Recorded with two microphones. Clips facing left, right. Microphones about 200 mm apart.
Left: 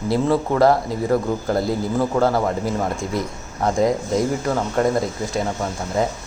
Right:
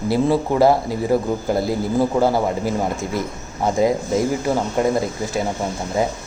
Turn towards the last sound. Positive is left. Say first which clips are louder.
# right 1 dB
turn(degrees=-10)  # may be behind; listen again after turning